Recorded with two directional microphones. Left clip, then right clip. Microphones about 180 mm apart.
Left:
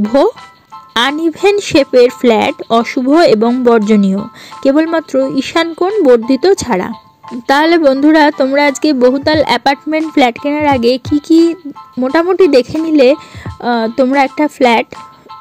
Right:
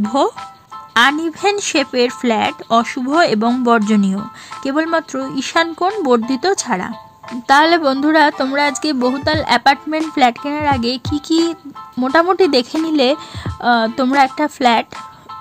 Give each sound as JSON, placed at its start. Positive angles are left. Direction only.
{"t": 0.0, "sound": "a woman's voice", "side_deg": 20}